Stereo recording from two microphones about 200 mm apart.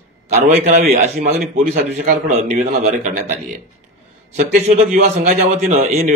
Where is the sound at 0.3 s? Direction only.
35° right (ahead or behind).